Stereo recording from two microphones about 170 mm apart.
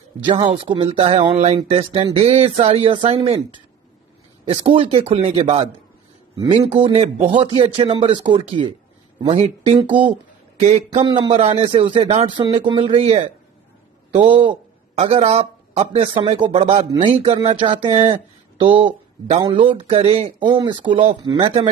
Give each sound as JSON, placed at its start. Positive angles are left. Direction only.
{"t": 0.2, "sound": "speech", "side_deg": -30}
{"t": 4.5, "sound": "a man's voice", "side_deg": -35}